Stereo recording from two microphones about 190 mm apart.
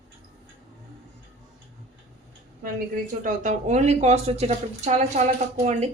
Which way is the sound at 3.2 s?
40° right (ahead or behind).